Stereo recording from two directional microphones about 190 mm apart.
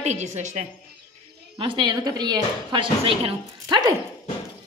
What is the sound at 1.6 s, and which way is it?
Speech, 25° right (ahead or behind).